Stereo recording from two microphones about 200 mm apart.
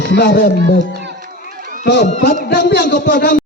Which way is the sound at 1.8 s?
60° left (ahead or behind).